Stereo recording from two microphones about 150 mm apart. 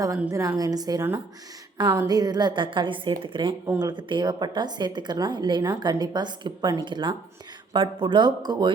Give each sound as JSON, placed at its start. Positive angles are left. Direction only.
{"t": 0.3, "sound": "a woman's voice", "side_deg": -20}